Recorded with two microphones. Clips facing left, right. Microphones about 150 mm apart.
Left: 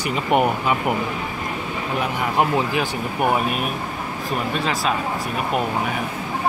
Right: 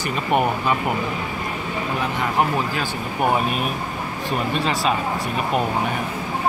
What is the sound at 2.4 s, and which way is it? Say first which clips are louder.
Speech: left 3 dB; 15° left (ahead or behind).